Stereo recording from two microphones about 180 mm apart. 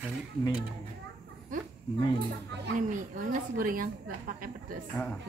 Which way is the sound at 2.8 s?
50° right (ahead or behind).